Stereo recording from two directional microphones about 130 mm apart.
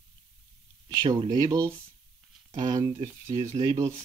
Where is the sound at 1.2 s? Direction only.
30° right (ahead or behind).